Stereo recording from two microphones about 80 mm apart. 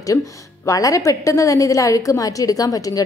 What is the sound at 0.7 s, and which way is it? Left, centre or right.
A woman's voice, left.